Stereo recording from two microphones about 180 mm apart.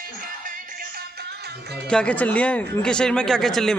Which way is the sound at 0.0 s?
50° right (ahead or behind).